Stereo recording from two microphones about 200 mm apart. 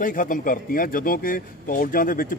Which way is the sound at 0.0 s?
45° left (ahead or behind).